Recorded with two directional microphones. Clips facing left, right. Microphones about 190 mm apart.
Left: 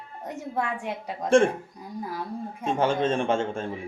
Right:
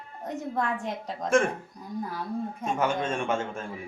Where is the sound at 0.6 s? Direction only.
10° left (ahead or behind).